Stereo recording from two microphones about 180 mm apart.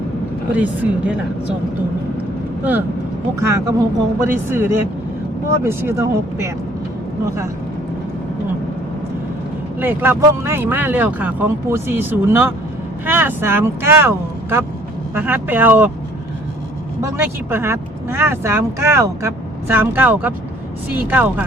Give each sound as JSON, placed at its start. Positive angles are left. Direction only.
{"t": 0.5, "sound": "speech", "side_deg": -10}
{"t": 3.4, "sound": "speech", "side_deg": -15}
{"t": 9.8, "sound": "speech", "side_deg": -10}
{"t": 17.0, "sound": "speech", "side_deg": -15}